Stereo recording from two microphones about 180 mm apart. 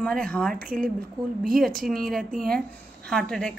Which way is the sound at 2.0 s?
Centre (ahead or behind).